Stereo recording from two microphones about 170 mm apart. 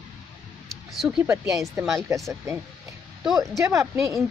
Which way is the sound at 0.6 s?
Centre (ahead or behind).